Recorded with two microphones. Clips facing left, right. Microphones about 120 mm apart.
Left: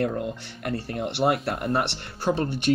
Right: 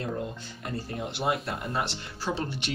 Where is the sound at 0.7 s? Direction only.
65° left (ahead or behind).